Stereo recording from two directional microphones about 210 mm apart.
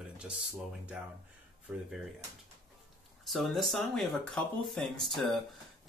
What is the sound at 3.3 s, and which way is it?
Speech, centre (ahead or behind).